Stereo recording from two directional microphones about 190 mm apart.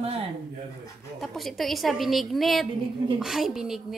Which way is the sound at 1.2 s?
Centre (ahead or behind).